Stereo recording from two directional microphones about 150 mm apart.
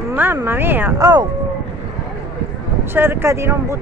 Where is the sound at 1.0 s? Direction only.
25° right (ahead or behind).